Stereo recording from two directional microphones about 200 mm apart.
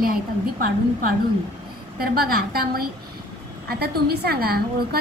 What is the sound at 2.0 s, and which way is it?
A woman's voice, 50° right (ahead or behind).